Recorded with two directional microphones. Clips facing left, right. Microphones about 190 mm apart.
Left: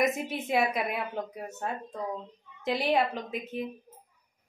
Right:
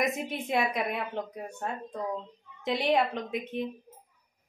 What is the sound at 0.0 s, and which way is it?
A woman's voice, centre (ahead or behind).